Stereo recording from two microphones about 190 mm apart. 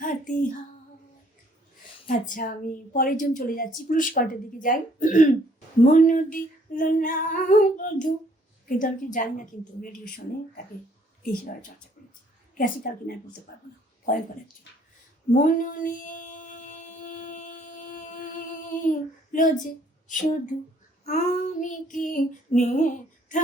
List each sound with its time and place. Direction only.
0.0 s female singing: 45° left (ahead or behind)
2.0 s a woman's voice: 45° left (ahead or behind)
11.2 s speech: 50° left (ahead or behind)
12.5 s a woman's voice: 50° left (ahead or behind)
15.3 s mantra: 45° left (ahead or behind)
19.3 s speech: 45° left (ahead or behind)
21.0 s child singing: 40° left (ahead or behind)
23.3 s a sound: 45° left (ahead or behind)